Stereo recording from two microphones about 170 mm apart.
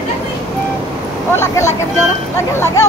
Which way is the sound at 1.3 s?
15° left (ahead or behind).